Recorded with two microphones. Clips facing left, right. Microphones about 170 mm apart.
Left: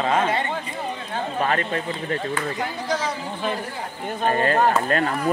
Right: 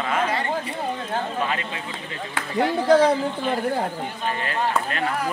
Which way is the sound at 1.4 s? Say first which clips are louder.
Left 5 dB; 50° left (ahead or behind).